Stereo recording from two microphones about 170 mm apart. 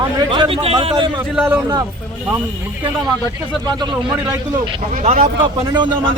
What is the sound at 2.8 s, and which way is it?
Speech, 25° right (ahead or behind).